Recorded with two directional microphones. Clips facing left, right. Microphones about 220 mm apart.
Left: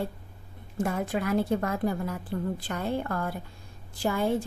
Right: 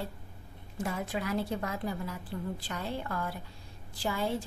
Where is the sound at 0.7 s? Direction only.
50° left (ahead or behind).